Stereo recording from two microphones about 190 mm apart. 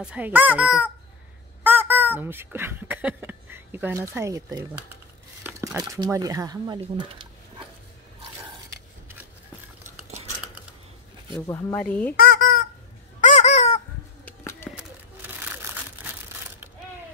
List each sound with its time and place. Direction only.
0.0 s a child's voice: 5° right (ahead or behind)
5.8 s speech: 15° right (ahead or behind)
11.4 s speech: 10° left (ahead or behind)
12.2 s fowl: 55° left (ahead or behind)
13.2 s honk: 40° left (ahead or behind)
14.2 s a sound: 15° left (ahead or behind)
15.4 s crushing: 10° right (ahead or behind)